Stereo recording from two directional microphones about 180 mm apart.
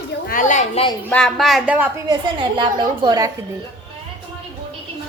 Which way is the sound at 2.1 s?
25° right (ahead or behind).